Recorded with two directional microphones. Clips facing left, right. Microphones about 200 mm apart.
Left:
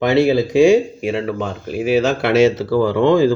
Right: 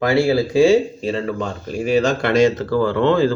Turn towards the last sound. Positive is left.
turn(degrees=10)  # may be behind; listen again after turning